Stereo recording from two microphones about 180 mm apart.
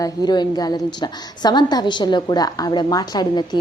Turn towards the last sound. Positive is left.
turn(degrees=25)  # may be behind; listen again after turning